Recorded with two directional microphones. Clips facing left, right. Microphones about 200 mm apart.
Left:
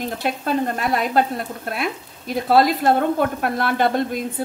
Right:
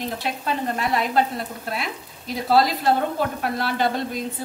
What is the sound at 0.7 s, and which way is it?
A woman's voice, 50° left (ahead or behind).